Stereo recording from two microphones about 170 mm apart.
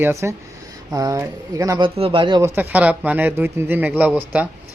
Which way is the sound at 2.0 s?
30° right (ahead or behind).